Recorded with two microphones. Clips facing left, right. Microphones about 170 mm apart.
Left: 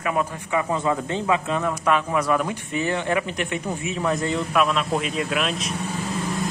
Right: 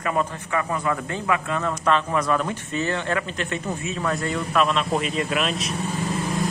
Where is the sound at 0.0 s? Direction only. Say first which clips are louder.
Even; 5° left (ahead or behind).